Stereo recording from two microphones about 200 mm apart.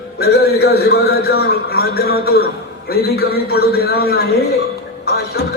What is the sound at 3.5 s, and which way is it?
Speech, 50° left (ahead or behind).